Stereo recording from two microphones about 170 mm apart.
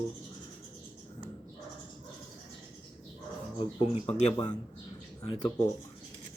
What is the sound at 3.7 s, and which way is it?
Speech, 35° left (ahead or behind).